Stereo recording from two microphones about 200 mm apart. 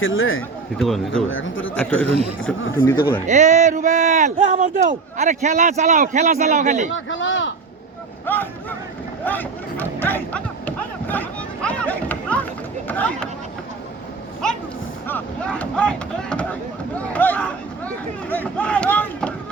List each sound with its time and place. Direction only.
0.0 s a man's voice: 80° left
0.8 s speech: centre (ahead or behind)
1.3 s a man's voice: 75° left (ahead or behind)
1.7 s speech: 10° left (ahead or behind)
3.2 s speech: 35° right (ahead or behind)
6.9 s a man's voice: 70° left (ahead or behind)
9.2 s a sound: 10° left (ahead or behind)
12.9 s speech: 5° left (ahead or behind)
15.0 s speech: 10° left (ahead or behind)
17.0 s a sound: 5° left (ahead or behind)